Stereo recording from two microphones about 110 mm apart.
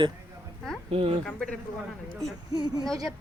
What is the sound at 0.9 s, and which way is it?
Speech, 60° right (ahead or behind).